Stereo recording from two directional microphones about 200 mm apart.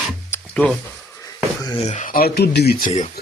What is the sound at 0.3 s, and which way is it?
Music, 5° left (ahead or behind).